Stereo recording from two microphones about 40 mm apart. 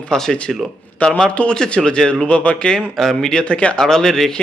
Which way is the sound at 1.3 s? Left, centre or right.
Left.